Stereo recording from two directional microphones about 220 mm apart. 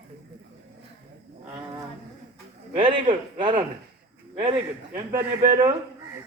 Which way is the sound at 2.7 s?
20° right (ahead or behind).